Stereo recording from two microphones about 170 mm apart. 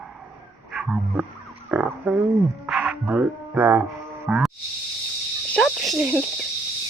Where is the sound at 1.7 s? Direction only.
5° right (ahead or behind).